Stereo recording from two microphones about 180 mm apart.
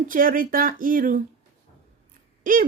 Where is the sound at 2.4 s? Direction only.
50° right (ahead or behind).